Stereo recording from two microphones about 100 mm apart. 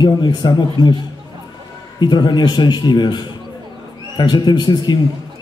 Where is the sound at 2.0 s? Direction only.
45° left (ahead or behind).